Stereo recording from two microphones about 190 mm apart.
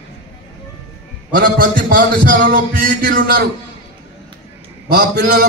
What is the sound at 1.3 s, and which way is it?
A man's voice, 45° right (ahead or behind).